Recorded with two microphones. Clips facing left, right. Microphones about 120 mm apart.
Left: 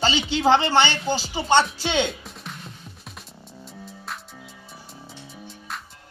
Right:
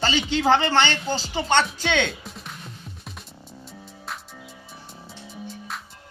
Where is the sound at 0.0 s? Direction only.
15° left (ahead or behind).